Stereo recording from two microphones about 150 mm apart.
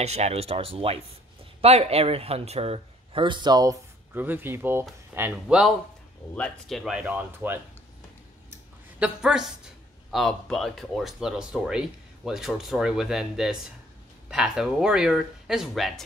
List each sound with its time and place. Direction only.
0.0 s speech: 45° right (ahead or behind); by 3.7 s 30° right (ahead or behind)
4.1 s speech: 15° right (ahead or behind)
9.0 s speech: 5° right (ahead or behind)